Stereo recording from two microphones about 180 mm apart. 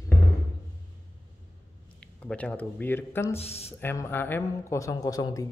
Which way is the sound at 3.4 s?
35° left (ahead or behind).